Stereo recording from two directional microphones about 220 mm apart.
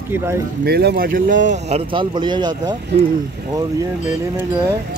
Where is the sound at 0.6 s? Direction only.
45° right (ahead or behind); by 2.8 s 20° right (ahead or behind).